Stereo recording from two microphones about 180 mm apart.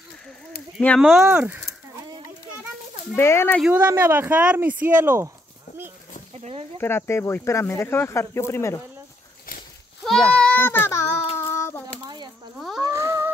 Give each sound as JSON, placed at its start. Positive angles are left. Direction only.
{"t": 0.7, "sound": "speech", "side_deg": 0}
{"t": 3.2, "sound": "speech", "side_deg": 15}
{"t": 3.6, "sound": "speech", "side_deg": -10}
{"t": 6.3, "sound": "speech", "side_deg": -35}
{"t": 6.8, "sound": "speech", "side_deg": 15}
{"t": 10.0, "sound": "a sound", "side_deg": 5}
{"t": 11.3, "sound": "child singing", "side_deg": 15}
{"t": 12.5, "sound": "a sound", "side_deg": 0}
{"t": 12.8, "sound": "a sound", "side_deg": -20}